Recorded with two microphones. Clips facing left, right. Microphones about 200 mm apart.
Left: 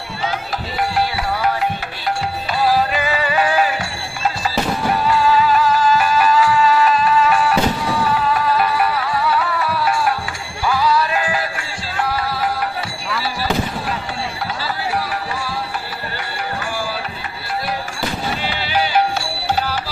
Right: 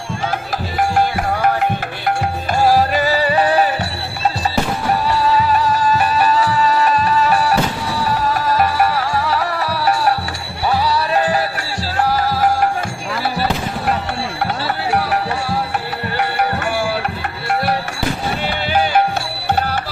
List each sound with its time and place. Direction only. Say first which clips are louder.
0.8 s music: right 4 dB; 50° right (ahead or behind)
2.6 s music: right 3 dB; 45° right (ahead or behind)
5.0 s music: left 2 dB; 40° right (ahead or behind); by 13.9 s 55° right (ahead or behind)
14.6 s music: right 2 dB; 65° right (ahead or behind)
18.4 s music: right 4 dB; 50° right (ahead or behind)